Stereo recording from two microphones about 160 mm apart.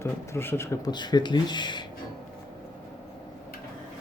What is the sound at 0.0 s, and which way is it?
Speech, 15° left (ahead or behind).